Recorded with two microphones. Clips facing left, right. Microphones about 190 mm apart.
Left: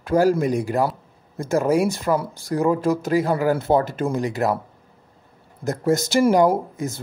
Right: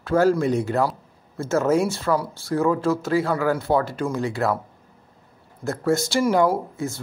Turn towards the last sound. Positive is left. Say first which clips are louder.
# left 2 dB
turn(degrees=20)  # may be behind; listen again after turning